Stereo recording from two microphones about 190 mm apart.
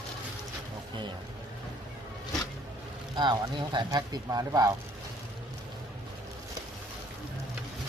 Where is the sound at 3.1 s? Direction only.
25° right (ahead or behind).